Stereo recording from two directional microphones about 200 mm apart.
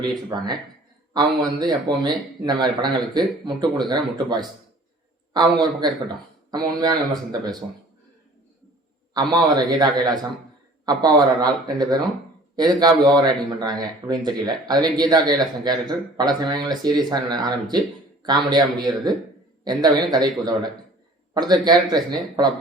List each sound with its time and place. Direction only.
0.3 s speech: 20° right (ahead or behind)
9.1 s speech: 20° right (ahead or behind)